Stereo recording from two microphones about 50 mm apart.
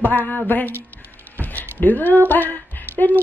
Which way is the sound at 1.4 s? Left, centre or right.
Left.